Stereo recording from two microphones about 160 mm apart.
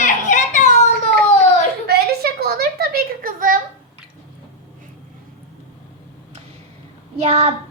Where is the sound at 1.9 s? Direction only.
80° right; by 3.6 s 60° right (ahead or behind).